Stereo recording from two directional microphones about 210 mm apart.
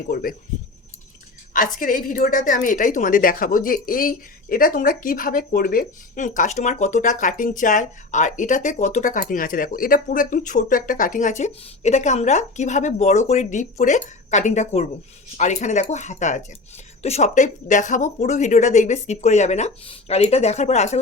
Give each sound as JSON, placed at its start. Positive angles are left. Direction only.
{"t": 0.1, "sound": "speech", "side_deg": 45}
{"t": 1.5, "sound": "a woman's voice", "side_deg": 40}